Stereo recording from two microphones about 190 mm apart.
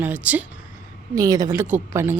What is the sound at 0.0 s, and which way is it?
Speech, 10° right (ahead or behind).